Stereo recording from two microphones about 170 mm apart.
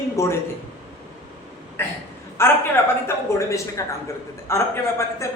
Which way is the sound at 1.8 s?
15° left (ahead or behind).